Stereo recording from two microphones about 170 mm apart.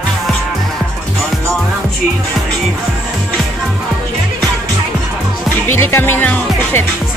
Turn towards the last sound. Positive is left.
turn(degrees=10)  # may be behind; listen again after turning